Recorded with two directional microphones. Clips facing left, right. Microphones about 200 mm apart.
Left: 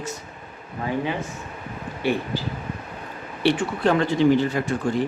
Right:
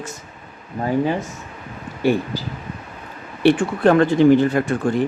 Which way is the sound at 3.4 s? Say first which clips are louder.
Right 6 dB; 55° right (ahead or behind).